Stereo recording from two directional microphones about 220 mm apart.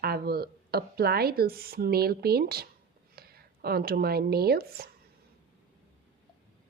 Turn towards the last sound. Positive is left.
turn(degrees=-45)  # may be behind; listen again after turning